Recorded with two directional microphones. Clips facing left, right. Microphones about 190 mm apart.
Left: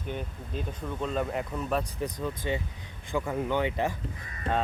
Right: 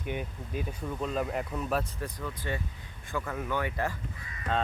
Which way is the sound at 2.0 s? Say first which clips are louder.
Left 5 dB; 20° left (ahead or behind).